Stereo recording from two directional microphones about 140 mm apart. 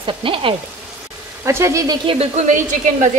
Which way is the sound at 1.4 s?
20° right (ahead or behind).